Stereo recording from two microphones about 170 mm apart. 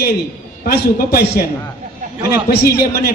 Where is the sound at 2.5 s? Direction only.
70° left (ahead or behind).